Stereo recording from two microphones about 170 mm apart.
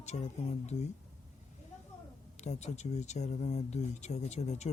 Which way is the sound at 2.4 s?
40° left (ahead or behind).